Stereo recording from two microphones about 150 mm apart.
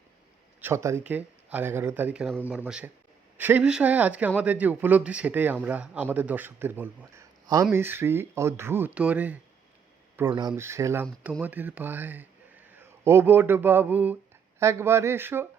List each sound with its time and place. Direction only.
0.6 s speech: 20° right (ahead or behind)
10.2 s speech: 25° right (ahead or behind)